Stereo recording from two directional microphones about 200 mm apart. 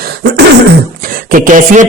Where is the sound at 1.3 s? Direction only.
40° right (ahead or behind).